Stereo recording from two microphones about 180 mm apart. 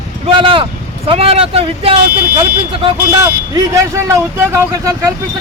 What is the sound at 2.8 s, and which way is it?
Speech, 20° right (ahead or behind).